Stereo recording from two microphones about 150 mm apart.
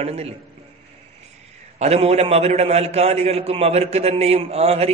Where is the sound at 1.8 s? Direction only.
45° right (ahead or behind).